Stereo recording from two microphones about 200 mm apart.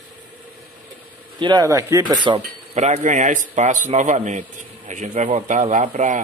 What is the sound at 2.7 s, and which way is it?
A man's voice, 35° right (ahead or behind).